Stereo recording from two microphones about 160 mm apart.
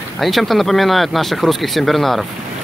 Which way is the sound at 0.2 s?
Centre (ahead or behind).